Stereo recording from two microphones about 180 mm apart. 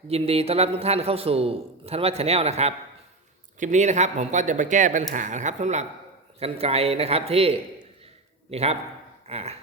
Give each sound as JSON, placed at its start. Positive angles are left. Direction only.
{"t": 0.1, "sound": "a man's voice", "side_deg": -35}